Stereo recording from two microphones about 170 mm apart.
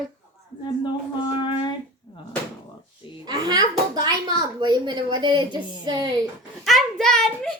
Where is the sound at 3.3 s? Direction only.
25° right (ahead or behind).